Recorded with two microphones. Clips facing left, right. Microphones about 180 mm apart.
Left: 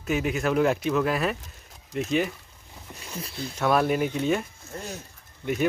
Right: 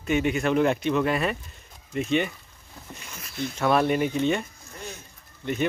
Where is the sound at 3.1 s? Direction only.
30° left (ahead or behind).